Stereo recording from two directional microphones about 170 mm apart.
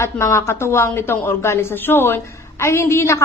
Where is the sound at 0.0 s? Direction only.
15° left (ahead or behind).